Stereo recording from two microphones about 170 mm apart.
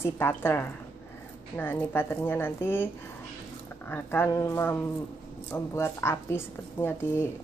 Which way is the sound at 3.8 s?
10° left (ahead or behind).